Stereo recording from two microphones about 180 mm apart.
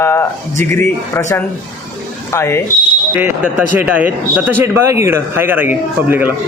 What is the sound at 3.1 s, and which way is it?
Speech, 10° right (ahead or behind).